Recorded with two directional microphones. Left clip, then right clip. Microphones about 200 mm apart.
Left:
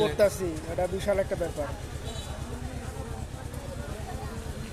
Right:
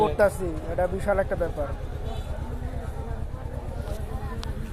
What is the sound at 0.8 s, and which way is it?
Speech, 10° left (ahead or behind).